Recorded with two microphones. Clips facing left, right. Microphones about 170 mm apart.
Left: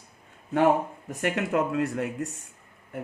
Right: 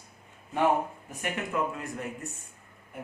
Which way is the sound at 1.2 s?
85° left.